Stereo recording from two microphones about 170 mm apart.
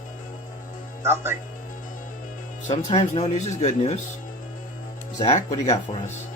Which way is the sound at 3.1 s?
40° left (ahead or behind).